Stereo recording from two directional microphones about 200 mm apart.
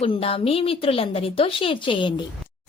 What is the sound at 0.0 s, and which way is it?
A woman's voice, 30° left (ahead or behind).